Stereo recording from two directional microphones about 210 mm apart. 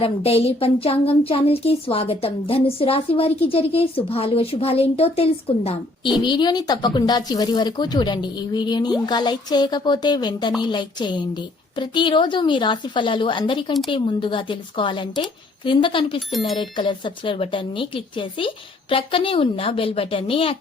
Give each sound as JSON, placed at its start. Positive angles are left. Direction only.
{"t": 0.0, "sound": "speech", "side_deg": 25}